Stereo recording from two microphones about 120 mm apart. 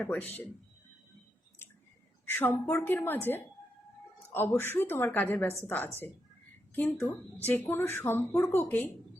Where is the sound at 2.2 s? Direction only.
15° left (ahead or behind).